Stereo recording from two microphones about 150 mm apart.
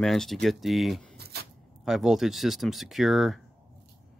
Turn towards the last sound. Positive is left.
turn(degrees=0)  # may be behind; listen again after turning